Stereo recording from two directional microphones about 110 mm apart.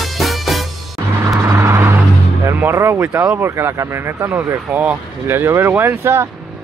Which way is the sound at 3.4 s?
25° right (ahead or behind).